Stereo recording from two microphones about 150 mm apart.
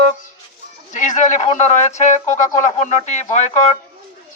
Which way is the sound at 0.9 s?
55° left (ahead or behind).